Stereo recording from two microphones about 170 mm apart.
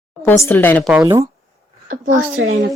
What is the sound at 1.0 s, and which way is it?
Speech, 20° right (ahead or behind).